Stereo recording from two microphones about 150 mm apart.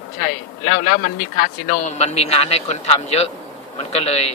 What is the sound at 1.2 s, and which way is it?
Speech, 70° left (ahead or behind).